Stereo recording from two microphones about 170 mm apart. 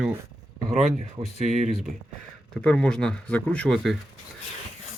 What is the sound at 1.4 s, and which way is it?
Speech, centre (ahead or behind).